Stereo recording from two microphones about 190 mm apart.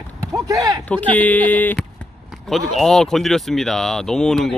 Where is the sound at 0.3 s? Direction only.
20° right (ahead or behind).